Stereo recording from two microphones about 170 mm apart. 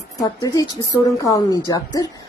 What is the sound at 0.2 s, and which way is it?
Speech, 20° left (ahead or behind).